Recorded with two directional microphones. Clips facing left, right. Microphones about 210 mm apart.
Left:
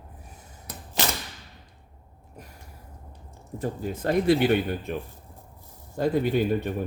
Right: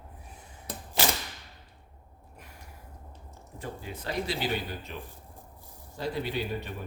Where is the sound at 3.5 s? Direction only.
45° left (ahead or behind).